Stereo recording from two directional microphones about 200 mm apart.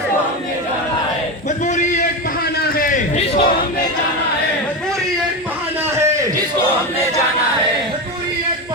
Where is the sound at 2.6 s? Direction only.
45° left (ahead or behind).